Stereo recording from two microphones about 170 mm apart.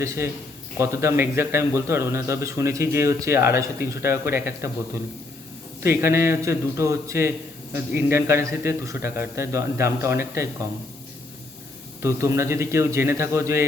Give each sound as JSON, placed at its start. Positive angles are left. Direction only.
{"t": 0.8, "sound": "a man's voice", "side_deg": -15}
{"t": 5.8, "sound": "a man's voice", "side_deg": -15}
{"t": 12.0, "sound": "a man's voice", "side_deg": -15}